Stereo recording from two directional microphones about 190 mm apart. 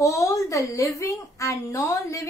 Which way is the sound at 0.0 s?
15° left (ahead or behind).